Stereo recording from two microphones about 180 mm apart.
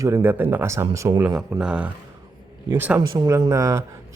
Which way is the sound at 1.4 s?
5° right (ahead or behind).